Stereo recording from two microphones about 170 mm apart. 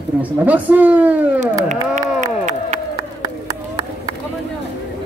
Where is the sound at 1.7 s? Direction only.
45° right (ahead or behind).